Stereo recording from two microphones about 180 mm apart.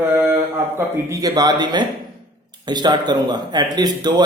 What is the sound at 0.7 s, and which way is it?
Speech, 20° right (ahead or behind).